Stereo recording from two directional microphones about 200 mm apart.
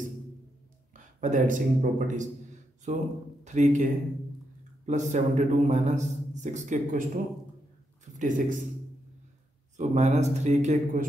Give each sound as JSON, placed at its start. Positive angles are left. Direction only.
{"t": 0.9, "sound": "a man's voice", "side_deg": -40}
{"t": 9.8, "sound": "a man's voice", "side_deg": -35}